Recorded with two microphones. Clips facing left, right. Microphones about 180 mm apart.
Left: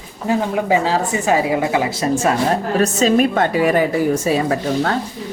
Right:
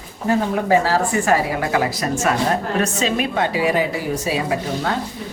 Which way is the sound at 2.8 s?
45° left (ahead or behind).